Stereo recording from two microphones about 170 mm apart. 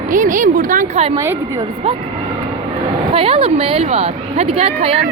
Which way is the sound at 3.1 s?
30° right (ahead or behind).